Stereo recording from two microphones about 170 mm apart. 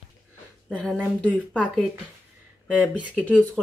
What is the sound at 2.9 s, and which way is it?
Speech, 10° right (ahead or behind).